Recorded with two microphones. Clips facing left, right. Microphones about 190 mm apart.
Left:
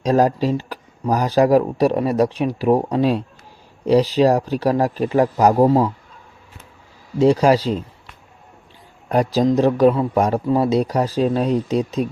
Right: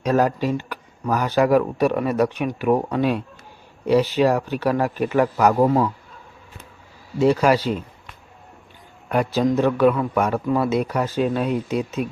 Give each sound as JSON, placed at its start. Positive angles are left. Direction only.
{"t": 0.0, "sound": "a man's voice", "side_deg": 35}
{"t": 7.2, "sound": "a man's voice", "side_deg": 35}
{"t": 9.0, "sound": "a man's voice", "side_deg": 35}